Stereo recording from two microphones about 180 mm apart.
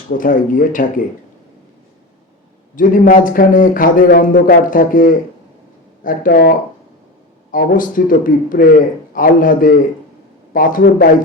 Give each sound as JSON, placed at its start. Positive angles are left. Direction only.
{"t": 0.1, "sound": "speech", "side_deg": 50}
{"t": 2.7, "sound": "speech", "side_deg": 50}